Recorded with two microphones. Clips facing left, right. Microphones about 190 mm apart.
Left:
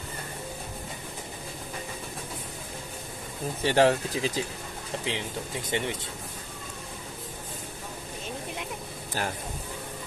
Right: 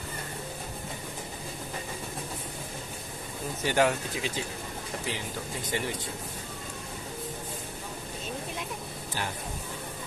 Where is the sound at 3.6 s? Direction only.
35° left (ahead or behind).